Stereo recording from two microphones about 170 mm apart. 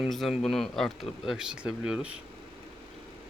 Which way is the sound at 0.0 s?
Centre (ahead or behind).